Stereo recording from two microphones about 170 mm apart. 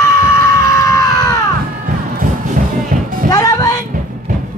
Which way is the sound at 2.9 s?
55° right (ahead or behind).